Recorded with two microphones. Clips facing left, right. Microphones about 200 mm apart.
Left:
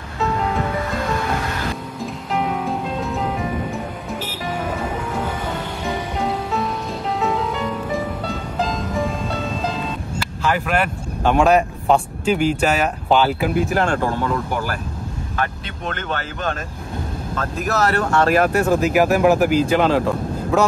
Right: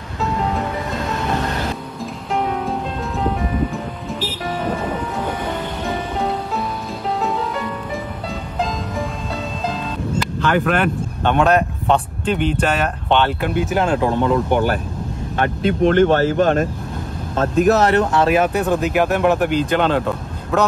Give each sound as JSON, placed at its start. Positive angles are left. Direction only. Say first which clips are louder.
{"t": 2.3, "sound": "music", "louder": "right 1 dB", "side_deg": 0}
{"t": 6.2, "sound": "music", "louder": "left 2 dB", "side_deg": 0}
{"t": 7.9, "sound": "music", "louder": "left 3 dB", "side_deg": 0}
{"t": 10.4, "sound": "speech", "louder": "right 2 dB", "side_deg": 5}
{"t": 14.0, "sound": "speech", "louder": "right 5 dB", "side_deg": -20}
{"t": 17.4, "sound": "speech", "louder": "right 7 dB", "side_deg": -25}
{"t": 18.1, "sound": "speech", "louder": "even", "side_deg": 0}